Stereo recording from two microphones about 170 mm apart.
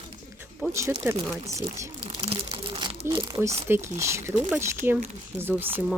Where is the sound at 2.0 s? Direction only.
35° right (ahead or behind).